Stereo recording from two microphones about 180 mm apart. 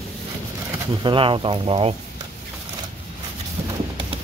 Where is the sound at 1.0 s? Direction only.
30° right (ahead or behind).